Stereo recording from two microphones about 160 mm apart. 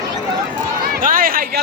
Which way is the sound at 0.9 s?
60° right (ahead or behind).